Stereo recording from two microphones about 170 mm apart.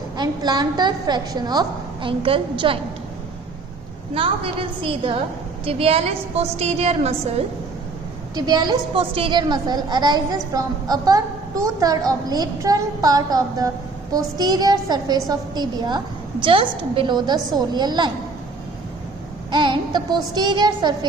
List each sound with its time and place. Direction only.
0.2 s a child's voice: 25° right (ahead or behind)
4.8 s a woman's voice: 30° right (ahead or behind)
8.4 s a child's voice: 25° right (ahead or behind)
19.5 s a child's voice: 25° right (ahead or behind)